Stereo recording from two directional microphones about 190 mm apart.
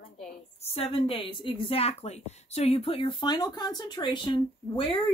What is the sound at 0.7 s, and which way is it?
A woman's voice, 30° left (ahead or behind).